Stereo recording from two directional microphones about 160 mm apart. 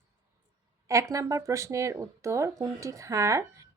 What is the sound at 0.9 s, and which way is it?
Speech, 20° right (ahead or behind).